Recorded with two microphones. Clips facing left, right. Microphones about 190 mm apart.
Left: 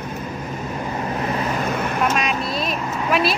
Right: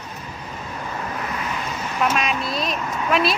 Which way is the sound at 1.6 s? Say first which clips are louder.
Left 3 dB; 55° left (ahead or behind).